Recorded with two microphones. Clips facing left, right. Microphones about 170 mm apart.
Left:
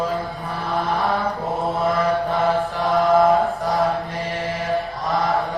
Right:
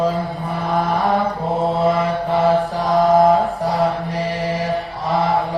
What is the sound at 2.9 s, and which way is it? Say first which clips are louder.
Mantra: right 3 dB; 40° right (ahead or behind).